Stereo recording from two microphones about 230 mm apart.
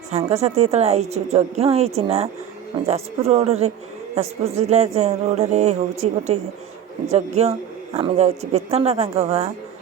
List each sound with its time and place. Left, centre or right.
0.1 s speech: right